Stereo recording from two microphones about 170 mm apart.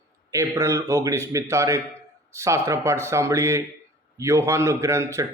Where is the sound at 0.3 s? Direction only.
20° right (ahead or behind).